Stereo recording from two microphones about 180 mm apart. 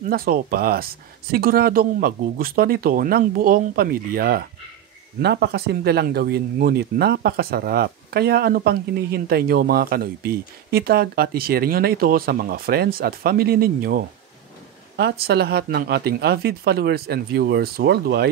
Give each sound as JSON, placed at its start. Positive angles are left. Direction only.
{"t": 0.0, "sound": "speech", "side_deg": -55}
{"t": 15.0, "sound": "speech", "side_deg": -65}